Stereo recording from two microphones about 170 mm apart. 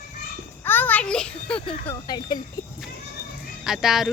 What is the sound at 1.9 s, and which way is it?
Speech, 25° left (ahead or behind).